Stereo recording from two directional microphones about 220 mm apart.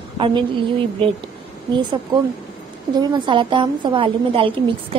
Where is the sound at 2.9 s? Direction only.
20° right (ahead or behind).